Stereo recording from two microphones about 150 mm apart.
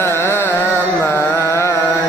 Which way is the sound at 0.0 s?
15° left (ahead or behind).